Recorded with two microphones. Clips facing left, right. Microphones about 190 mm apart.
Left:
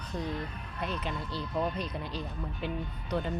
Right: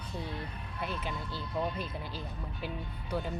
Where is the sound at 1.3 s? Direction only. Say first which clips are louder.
Left 3 dB; 20° left (ahead or behind).